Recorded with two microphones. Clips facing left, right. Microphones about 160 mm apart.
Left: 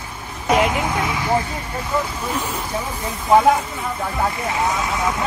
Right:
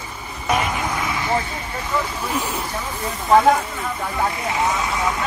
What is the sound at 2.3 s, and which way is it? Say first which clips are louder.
Speech: right 1 dB; 10° right (ahead or behind).